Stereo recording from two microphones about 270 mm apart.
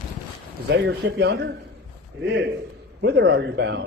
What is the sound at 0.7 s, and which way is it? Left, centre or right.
Speech, right.